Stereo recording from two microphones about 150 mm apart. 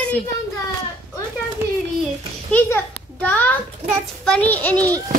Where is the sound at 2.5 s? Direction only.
10° left (ahead or behind).